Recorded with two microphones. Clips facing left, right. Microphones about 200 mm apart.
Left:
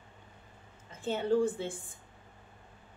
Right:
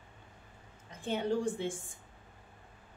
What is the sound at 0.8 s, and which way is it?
Speech, 15° right (ahead or behind).